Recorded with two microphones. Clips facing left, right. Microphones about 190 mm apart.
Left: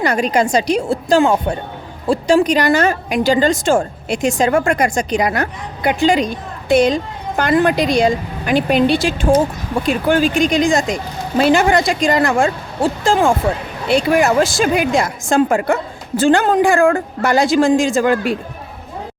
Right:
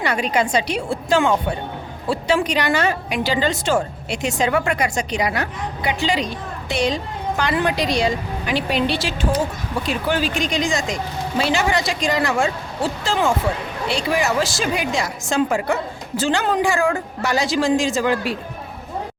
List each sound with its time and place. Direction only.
0.0 s a woman's voice: 45° left (ahead or behind)